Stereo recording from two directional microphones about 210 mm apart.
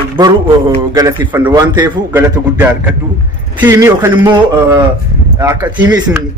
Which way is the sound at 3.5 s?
10° right (ahead or behind).